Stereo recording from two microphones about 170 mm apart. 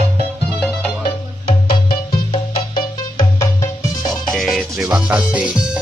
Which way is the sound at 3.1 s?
20° left (ahead or behind).